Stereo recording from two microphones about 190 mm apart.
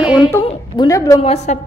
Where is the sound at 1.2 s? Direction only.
35° left (ahead or behind).